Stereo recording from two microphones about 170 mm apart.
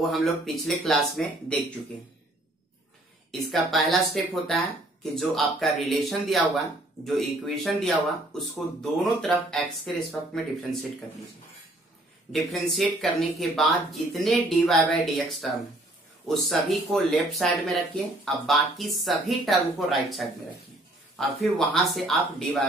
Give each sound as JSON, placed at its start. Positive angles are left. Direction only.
{"t": 0.0, "sound": "speech", "side_deg": 0}
{"t": 3.3, "sound": "speech", "side_deg": 0}
{"t": 12.3, "sound": "speech", "side_deg": 0}